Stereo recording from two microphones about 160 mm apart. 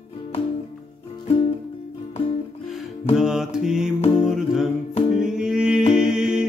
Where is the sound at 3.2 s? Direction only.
5° right (ahead or behind).